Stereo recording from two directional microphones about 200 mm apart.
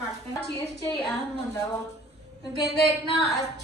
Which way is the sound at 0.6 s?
10° left (ahead or behind).